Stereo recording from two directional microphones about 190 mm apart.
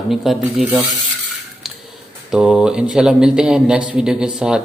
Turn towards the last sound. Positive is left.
turn(degrees=-5)  # may be behind; listen again after turning